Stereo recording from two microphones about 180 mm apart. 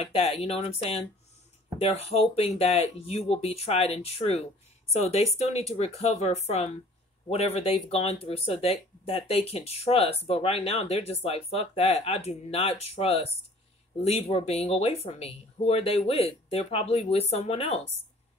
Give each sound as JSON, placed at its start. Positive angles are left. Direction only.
{"t": 0.0, "sound": "speech", "side_deg": 35}